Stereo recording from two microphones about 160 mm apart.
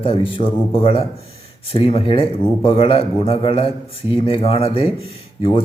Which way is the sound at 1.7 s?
35° left (ahead or behind).